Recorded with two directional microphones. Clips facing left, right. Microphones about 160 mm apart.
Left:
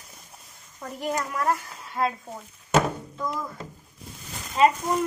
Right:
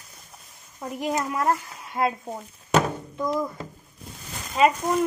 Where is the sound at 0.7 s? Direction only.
15° right (ahead or behind).